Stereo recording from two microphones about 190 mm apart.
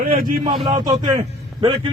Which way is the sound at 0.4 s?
25° right (ahead or behind).